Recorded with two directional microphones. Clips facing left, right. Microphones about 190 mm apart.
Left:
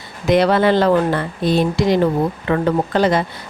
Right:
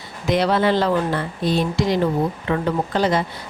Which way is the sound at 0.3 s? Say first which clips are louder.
Left 4 dB; 60° left (ahead or behind).